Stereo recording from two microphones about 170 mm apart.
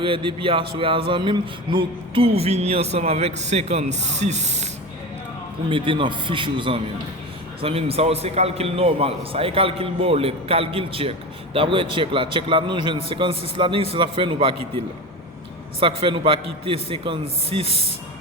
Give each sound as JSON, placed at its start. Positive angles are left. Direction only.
{"t": 0.0, "sound": "speech", "side_deg": -30}
{"t": 5.6, "sound": "a man's voice", "side_deg": -30}
{"t": 15.8, "sound": "speech", "side_deg": -35}